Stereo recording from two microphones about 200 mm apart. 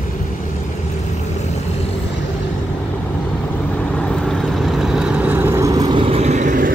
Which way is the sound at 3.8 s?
5° left (ahead or behind).